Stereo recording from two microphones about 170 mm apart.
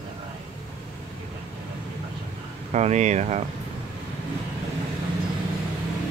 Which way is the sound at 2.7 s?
45° right (ahead or behind).